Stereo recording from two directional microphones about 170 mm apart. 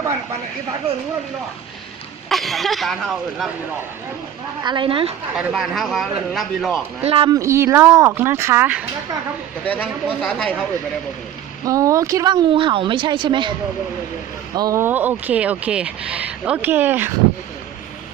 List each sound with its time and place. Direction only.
2.3 s speech: centre (ahead or behind)
4.6 s a woman's voice: 25° right (ahead or behind)
5.4 s speech: centre (ahead or behind)
7.0 s speech: 35° right (ahead or behind)
7.3 s speech: 15° right (ahead or behind)
9.6 s a woman's voice: 10° left (ahead or behind)
11.6 s a woman's voice: 20° right (ahead or behind)
14.5 s speech: 20° right (ahead or behind)